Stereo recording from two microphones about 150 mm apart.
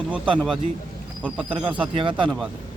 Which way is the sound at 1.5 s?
35° right (ahead or behind).